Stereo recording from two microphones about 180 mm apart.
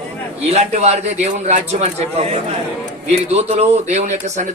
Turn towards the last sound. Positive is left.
turn(degrees=-40)  # may be behind; listen again after turning